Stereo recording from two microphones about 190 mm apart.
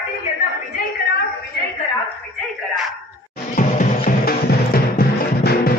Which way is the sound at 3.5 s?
45° left (ahead or behind).